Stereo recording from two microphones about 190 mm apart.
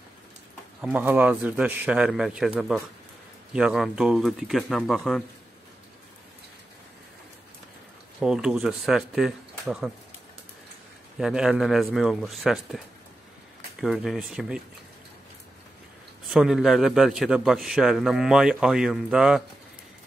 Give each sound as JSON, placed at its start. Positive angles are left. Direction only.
{"t": 0.7, "sound": "a man's voice", "side_deg": -5}
{"t": 8.2, "sound": "a man's voice", "side_deg": -5}
{"t": 11.1, "sound": "a man's voice", "side_deg": -5}
{"t": 16.3, "sound": "a man's voice", "side_deg": 0}